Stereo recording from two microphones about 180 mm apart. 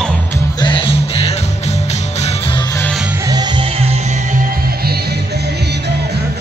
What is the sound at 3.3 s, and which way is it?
Music, 25° right (ahead or behind).